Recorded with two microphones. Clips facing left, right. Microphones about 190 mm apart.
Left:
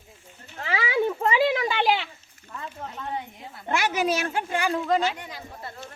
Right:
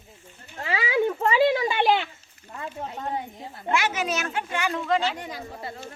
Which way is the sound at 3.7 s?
35° left (ahead or behind).